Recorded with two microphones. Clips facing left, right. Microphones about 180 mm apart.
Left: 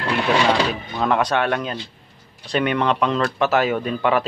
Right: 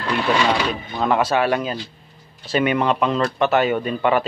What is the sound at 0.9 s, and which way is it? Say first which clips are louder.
Speech: right 1 dB; centre (ahead or behind).